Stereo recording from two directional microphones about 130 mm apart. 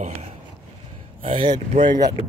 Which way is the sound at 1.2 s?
45° right (ahead or behind).